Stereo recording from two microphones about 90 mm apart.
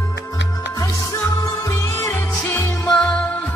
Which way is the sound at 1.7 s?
30° left (ahead or behind).